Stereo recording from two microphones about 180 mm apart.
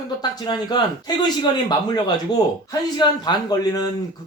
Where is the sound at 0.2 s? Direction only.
25° left (ahead or behind).